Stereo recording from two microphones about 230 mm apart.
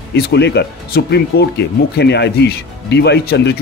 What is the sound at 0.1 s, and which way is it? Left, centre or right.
Speech, left.